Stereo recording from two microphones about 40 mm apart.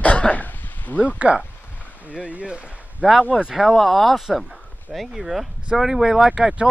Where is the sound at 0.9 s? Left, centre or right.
Left.